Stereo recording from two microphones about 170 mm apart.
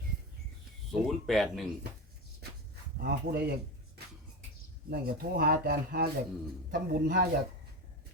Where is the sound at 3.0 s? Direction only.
65° right (ahead or behind).